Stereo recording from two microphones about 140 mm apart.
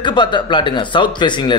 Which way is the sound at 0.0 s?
35° left (ahead or behind).